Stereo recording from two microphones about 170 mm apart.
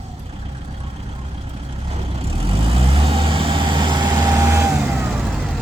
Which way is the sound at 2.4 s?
35° right (ahead or behind).